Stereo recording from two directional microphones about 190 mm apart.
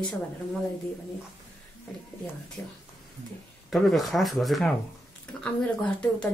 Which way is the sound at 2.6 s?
5° left (ahead or behind).